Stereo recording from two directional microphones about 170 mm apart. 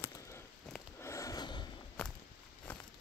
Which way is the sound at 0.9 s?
15° left (ahead or behind).